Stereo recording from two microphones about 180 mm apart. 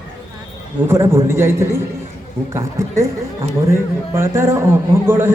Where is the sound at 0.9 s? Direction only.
15° right (ahead or behind).